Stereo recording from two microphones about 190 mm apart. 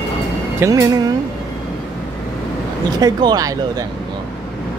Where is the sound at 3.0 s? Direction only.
20° right (ahead or behind).